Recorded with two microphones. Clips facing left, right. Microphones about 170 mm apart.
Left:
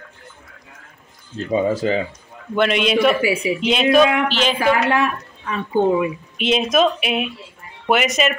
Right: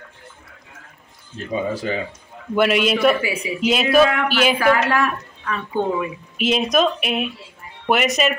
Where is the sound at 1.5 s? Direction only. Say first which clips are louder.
Left 5 dB; 30° left (ahead or behind).